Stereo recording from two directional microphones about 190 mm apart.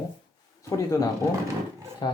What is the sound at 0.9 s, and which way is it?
Speech, 15° left (ahead or behind).